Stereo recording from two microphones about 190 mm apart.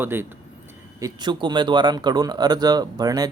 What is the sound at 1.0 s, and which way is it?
Speech, 25° right (ahead or behind).